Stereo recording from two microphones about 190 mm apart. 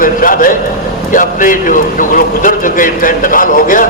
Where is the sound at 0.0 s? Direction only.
45° left (ahead or behind).